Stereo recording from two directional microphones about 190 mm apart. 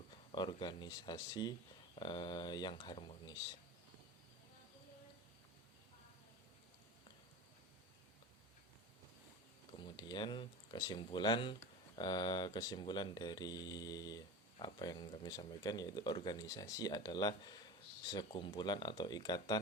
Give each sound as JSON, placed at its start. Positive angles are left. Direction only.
{"t": 0.3, "sound": "speech", "side_deg": 25}
{"t": 9.8, "sound": "speech", "side_deg": 25}